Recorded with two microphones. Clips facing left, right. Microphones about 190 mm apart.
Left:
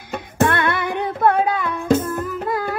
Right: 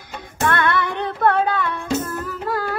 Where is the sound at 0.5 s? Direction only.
20° left (ahead or behind).